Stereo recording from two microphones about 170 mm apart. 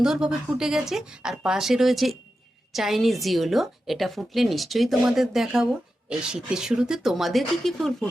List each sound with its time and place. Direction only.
0.0 s a woman's voice: 5° right (ahead or behind)